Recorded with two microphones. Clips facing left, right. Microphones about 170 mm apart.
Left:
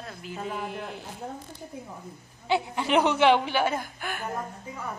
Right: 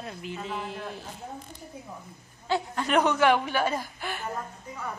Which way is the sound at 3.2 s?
25° left (ahead or behind).